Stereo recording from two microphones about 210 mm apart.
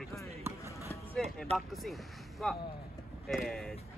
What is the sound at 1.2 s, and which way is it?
Speech, centre (ahead or behind).